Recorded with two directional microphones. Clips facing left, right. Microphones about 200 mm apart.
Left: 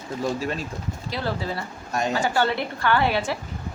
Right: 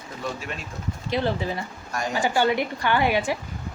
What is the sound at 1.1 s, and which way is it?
A woman's voice, 20° right (ahead or behind).